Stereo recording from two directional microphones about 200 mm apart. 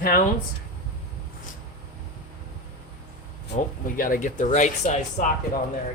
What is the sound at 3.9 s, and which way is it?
Speech, 45° left (ahead or behind).